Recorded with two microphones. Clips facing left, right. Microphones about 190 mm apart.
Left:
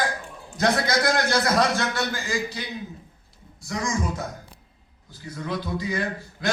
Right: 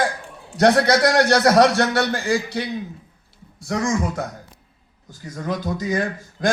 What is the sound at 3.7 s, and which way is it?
Speech, 55° right (ahead or behind).